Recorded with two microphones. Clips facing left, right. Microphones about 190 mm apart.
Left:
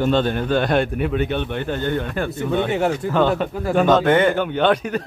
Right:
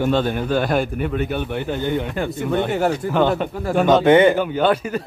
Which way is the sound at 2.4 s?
5° right (ahead or behind).